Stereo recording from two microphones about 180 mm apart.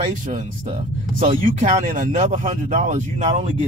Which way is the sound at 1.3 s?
45° right (ahead or behind).